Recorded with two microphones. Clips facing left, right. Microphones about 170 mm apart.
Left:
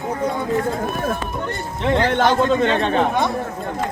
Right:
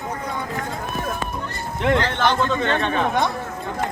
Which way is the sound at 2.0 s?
40° left (ahead or behind).